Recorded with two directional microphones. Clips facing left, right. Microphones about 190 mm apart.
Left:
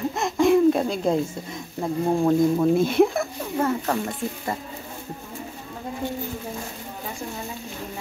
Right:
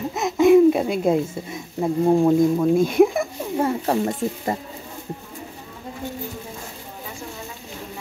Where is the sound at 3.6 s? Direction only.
30° right (ahead or behind).